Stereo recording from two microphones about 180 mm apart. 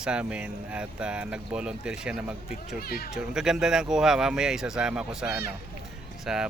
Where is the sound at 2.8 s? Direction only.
55° left (ahead or behind).